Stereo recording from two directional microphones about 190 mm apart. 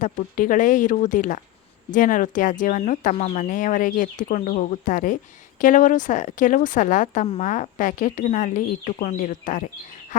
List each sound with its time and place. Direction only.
0.0 s speech: 45° left (ahead or behind)